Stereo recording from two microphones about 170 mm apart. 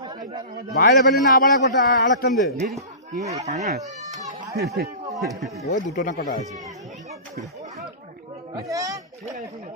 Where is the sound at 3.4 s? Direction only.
40° right (ahead or behind).